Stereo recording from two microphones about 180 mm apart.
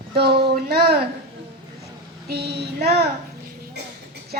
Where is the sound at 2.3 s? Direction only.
65° right (ahead or behind).